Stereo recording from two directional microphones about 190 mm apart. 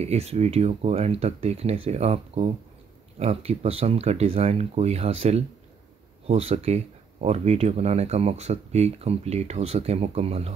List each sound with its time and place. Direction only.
0.0 s speech: 35° right (ahead or behind)